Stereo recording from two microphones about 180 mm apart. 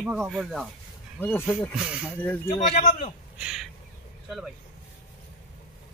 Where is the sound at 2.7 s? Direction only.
40° left (ahead or behind).